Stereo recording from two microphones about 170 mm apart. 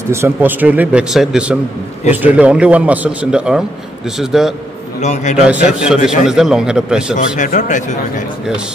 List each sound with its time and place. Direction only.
0.1 s a man's voice: 15° right (ahead or behind)
5.0 s speech: 45° left (ahead or behind)
5.8 s a man's voice: 5° right (ahead or behind)
7.3 s speech: 50° left (ahead or behind)